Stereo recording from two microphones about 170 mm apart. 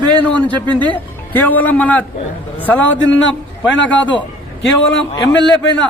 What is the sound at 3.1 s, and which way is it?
Speech, 90° left.